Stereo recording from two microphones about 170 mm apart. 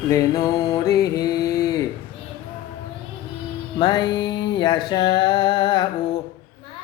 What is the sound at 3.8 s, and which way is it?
Music, 25° left (ahead or behind).